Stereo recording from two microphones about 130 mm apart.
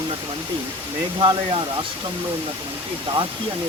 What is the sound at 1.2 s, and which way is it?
Speech, 40° right (ahead or behind).